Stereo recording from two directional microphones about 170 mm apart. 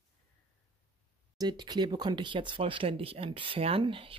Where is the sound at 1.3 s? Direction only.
25° right (ahead or behind).